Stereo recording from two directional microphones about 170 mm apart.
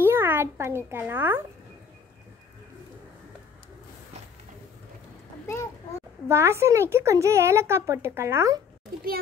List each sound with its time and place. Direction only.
0.0 s a sound: 15° right (ahead or behind)
5.5 s a child's voice: 15° left (ahead or behind)
6.2 s speech: 15° right (ahead or behind)